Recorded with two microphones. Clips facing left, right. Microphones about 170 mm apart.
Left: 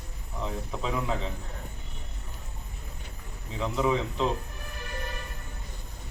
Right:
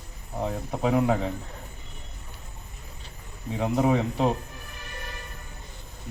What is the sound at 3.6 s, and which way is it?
Speech, 45° right (ahead or behind).